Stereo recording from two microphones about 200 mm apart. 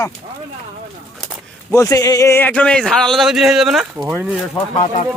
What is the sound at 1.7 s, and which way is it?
Speech, 15° left (ahead or behind).